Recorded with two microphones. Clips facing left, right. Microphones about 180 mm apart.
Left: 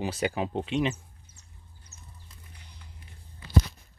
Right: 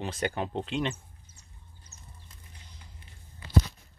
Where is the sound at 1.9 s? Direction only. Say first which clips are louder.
Left 2 dB; 35° right (ahead or behind).